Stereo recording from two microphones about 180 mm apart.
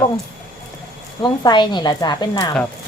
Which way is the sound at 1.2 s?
25° left (ahead or behind).